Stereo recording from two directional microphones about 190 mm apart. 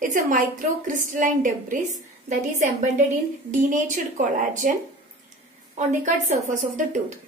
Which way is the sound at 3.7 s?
40° right (ahead or behind).